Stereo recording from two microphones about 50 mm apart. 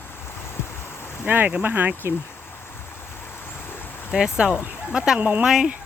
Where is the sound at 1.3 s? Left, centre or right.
Right.